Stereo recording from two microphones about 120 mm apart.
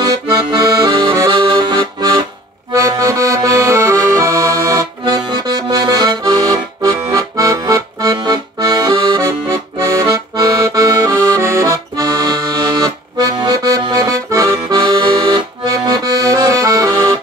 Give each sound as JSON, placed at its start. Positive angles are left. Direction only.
{"t": 0.0, "sound": "accordion", "side_deg": -35}
{"t": 14.8, "sound": "accordion", "side_deg": -40}